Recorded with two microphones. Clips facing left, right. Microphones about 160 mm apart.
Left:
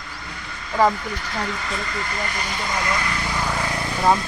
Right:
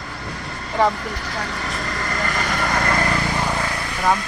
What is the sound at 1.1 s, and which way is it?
Speech, 45° right (ahead or behind).